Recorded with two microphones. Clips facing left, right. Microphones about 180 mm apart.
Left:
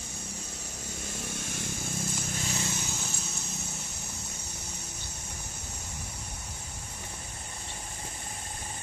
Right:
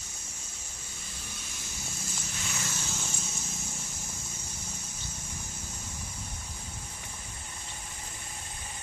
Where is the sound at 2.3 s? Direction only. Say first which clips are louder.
Left 5 dB; 35° left (ahead or behind).